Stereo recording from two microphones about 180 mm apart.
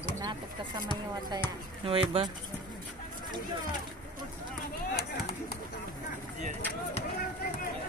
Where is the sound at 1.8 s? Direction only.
30° right (ahead or behind).